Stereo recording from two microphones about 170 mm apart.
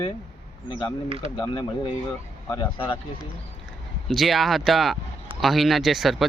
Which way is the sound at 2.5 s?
30° left (ahead or behind).